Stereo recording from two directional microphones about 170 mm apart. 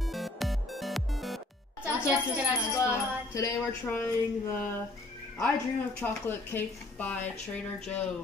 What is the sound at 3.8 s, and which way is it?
A woman's voice, 10° left (ahead or behind).